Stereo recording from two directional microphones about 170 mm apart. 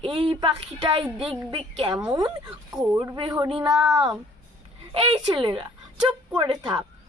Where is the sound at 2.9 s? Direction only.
10° right (ahead or behind).